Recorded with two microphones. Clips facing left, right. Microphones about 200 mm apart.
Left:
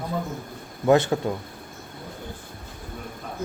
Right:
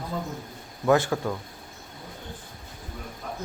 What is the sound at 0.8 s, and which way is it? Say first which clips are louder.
Speech: left 3 dB; 20° left (ahead or behind).